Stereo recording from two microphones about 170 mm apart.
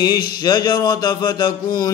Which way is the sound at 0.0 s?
25° left (ahead or behind).